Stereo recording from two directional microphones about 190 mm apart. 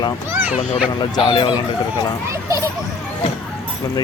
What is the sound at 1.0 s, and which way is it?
Speech, 25° left (ahead or behind).